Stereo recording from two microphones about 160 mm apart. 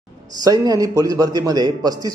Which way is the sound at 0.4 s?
25° right (ahead or behind).